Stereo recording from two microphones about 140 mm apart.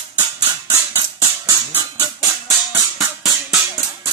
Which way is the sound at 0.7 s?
20° right (ahead or behind).